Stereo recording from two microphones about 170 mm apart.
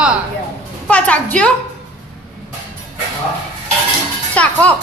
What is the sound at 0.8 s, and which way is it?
Speech, 10° left (ahead or behind).